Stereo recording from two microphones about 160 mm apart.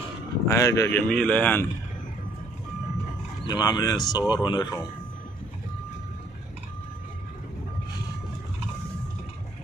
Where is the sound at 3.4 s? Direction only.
25° left (ahead or behind).